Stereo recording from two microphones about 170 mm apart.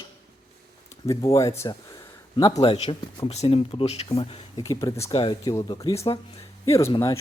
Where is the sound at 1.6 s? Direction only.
25° left (ahead or behind).